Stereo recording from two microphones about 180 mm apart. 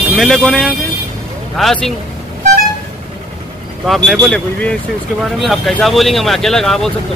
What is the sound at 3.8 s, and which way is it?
Speech, centre (ahead or behind).